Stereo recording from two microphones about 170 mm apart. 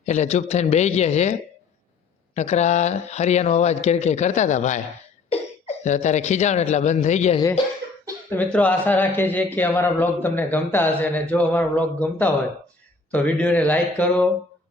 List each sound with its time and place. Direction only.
0.0 s speech: 45° left (ahead or behind)
8.5 s a man's voice: 10° left (ahead or behind)